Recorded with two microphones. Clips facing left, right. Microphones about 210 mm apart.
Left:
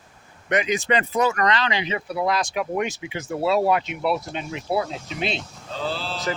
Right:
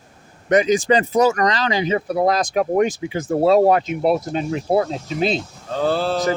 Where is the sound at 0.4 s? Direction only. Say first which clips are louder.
Right 7 dB; 35° right (ahead or behind).